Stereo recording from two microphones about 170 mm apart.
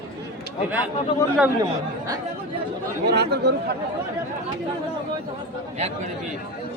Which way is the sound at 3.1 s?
75° right (ahead or behind).